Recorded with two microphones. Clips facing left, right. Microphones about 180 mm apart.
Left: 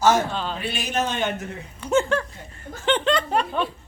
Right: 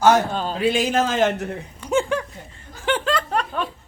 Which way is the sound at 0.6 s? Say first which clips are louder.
Right 9 dB; 90° right.